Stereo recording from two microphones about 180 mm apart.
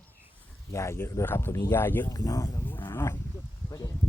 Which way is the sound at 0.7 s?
15° left (ahead or behind).